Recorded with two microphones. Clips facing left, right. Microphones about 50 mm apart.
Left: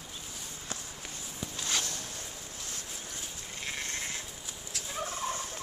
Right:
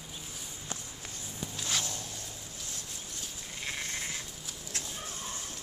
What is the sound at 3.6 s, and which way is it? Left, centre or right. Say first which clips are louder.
Frog: even; centre.